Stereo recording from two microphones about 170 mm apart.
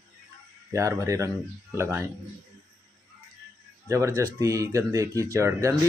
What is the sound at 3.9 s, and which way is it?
Speech, 15° right (ahead or behind).